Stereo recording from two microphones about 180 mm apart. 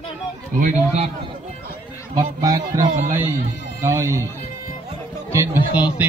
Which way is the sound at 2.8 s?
45° right (ahead or behind).